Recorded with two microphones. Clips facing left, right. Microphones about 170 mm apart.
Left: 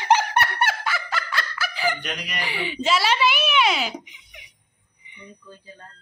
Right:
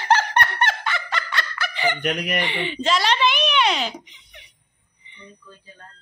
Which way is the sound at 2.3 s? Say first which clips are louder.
Right 3 dB; 5° left (ahead or behind).